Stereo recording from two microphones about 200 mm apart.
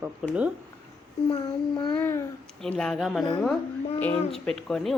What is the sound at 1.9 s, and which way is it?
A woman's voice, 10° left (ahead or behind).